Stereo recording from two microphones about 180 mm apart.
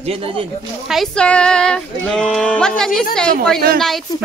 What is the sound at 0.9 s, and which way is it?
Speech, centre (ahead or behind).